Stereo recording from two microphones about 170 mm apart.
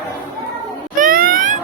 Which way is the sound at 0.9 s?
55° right (ahead or behind).